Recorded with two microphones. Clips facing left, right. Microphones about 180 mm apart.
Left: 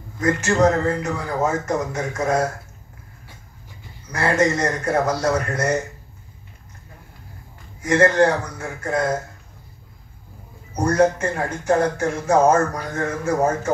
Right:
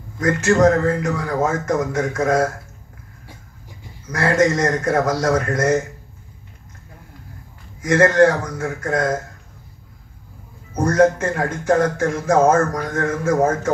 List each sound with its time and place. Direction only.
0.2 s speech: 90° right
4.1 s speech: 90° right
7.8 s speech: 90° right
10.8 s speech: 90° right